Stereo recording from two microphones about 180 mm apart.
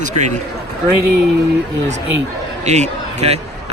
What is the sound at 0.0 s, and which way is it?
Speech, 40° right (ahead or behind).